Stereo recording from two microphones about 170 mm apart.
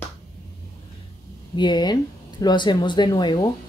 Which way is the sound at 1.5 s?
25° left (ahead or behind).